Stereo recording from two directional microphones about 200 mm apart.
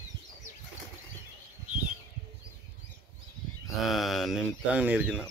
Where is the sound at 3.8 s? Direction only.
Centre (ahead or behind).